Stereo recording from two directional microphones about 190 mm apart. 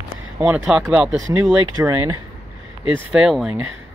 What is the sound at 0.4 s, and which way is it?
Speech, 5° right (ahead or behind).